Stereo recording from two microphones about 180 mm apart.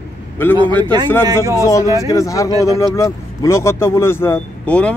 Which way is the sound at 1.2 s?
20° right (ahead or behind).